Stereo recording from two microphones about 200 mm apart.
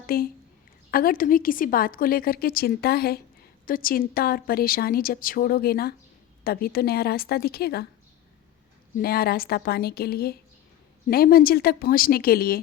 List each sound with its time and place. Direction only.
0.1 s a woman's voice: 50° left (ahead or behind)
9.0 s a woman's voice: 50° left (ahead or behind)